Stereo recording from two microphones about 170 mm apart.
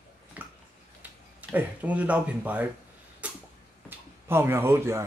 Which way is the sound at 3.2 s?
10° right (ahead or behind).